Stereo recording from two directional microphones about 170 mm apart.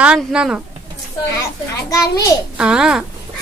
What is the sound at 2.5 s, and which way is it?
Speech, 5° right (ahead or behind).